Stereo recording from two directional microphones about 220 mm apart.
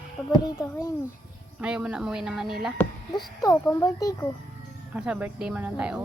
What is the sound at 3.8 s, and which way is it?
Speech, 15° left (ahead or behind).